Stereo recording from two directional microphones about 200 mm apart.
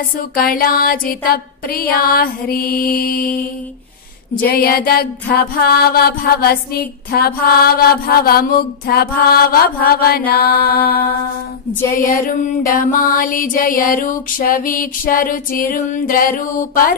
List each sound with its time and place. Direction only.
0.4 s music: 45° left (ahead or behind)
4.4 s music: 50° left (ahead or behind)